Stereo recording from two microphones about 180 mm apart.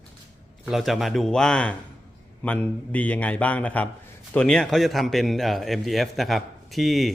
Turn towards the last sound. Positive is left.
turn(degrees=0)  # may be behind; listen again after turning